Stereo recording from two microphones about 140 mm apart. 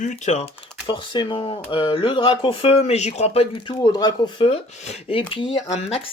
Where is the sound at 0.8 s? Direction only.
35° left (ahead or behind).